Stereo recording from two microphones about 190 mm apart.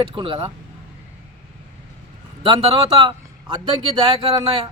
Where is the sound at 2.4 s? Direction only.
30° right (ahead or behind).